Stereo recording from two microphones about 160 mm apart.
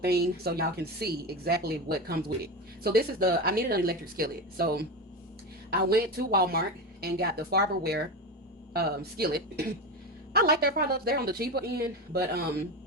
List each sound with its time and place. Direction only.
0.0 s a woman's voice: 75° right (ahead or behind)